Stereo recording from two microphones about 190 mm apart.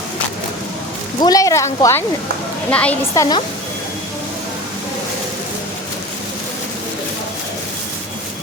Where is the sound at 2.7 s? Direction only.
5° left (ahead or behind).